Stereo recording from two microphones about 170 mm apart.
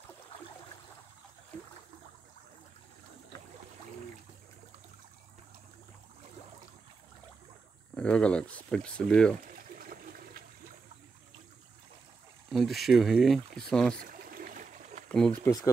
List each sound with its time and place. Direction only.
7.9 s speech: 5° left (ahead or behind)
9.5 s a sound: 55° right (ahead or behind)
12.4 s speech: centre (ahead or behind)
13.9 s a sound: 55° right (ahead or behind)
15.0 s speech: 5° left (ahead or behind)
15.4 s speech: 20° left (ahead or behind)